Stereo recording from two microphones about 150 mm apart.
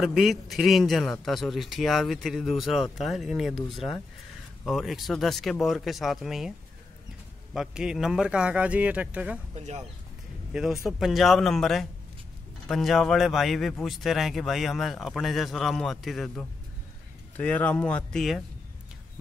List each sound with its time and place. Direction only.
0.0 s a man's voice: centre (ahead or behind)
7.5 s a man's voice: 5° right (ahead or behind)
9.6 s speech: 50° right (ahead or behind)
10.5 s a man's voice: 5° right (ahead or behind)